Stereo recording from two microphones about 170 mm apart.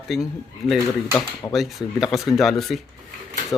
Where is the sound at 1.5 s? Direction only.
Centre (ahead or behind).